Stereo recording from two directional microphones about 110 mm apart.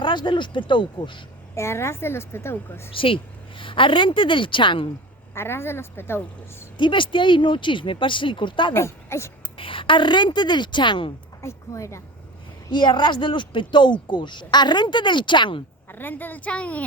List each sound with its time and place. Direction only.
0.0 s speech: 45° left (ahead or behind)
1.5 s a woman's voice: 25° left (ahead or behind)
2.9 s speech: 55° left (ahead or behind)
5.3 s a woman's voice: 20° left (ahead or behind)
6.7 s speech: 45° left (ahead or behind)
8.7 s speech: 25° left (ahead or behind)
9.6 s speech: 50° left (ahead or behind)
11.4 s a woman's voice: 25° left (ahead or behind)
12.7 s speech: 45° left (ahead or behind)
15.9 s a woman's voice: 20° left (ahead or behind)